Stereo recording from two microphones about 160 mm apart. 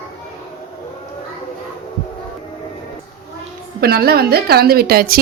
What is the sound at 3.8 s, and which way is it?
A woman's voice, 75° right (ahead or behind).